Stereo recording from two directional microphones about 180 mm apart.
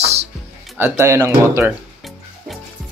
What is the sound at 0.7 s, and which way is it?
Speech, 15° right (ahead or behind).